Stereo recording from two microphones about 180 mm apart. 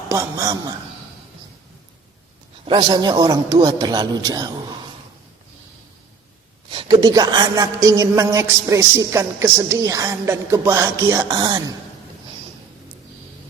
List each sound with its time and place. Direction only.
0.1 s a man's voice: 15° right (ahead or behind)
2.6 s a man's voice: 25° right (ahead or behind)
6.7 s a man's voice: 25° right (ahead or behind)